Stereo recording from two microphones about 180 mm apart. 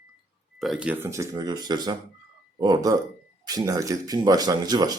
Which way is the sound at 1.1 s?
20° right (ahead or behind).